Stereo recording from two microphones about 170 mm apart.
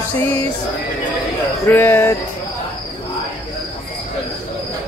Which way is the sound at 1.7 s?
10° left (ahead or behind).